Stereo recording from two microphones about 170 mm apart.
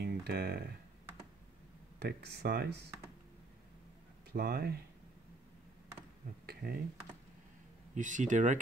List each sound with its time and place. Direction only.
0.0 s guitar: 65° right (ahead or behind)
2.0 s speech: 70° right (ahead or behind)
4.3 s speech: 65° right (ahead or behind)
6.4 s a sound: 65° right (ahead or behind)
7.9 s speech: 50° right (ahead or behind)